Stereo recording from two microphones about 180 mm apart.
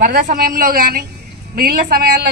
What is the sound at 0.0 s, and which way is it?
A woman's voice, 50° right (ahead or behind).